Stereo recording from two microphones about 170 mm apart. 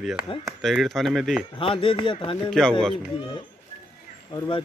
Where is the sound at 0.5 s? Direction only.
Centre (ahead or behind).